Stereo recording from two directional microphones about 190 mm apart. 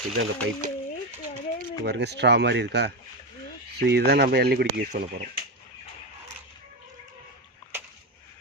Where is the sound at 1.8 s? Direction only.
60° right (ahead or behind).